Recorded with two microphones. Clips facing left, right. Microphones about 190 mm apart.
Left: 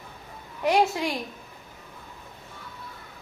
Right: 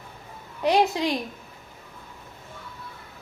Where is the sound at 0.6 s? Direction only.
20° right (ahead or behind).